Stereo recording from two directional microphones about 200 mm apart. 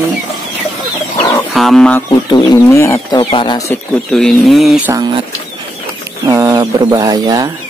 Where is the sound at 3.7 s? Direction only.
5° left (ahead or behind).